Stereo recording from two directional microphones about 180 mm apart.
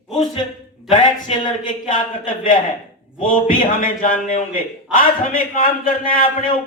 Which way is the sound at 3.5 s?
50° left (ahead or behind).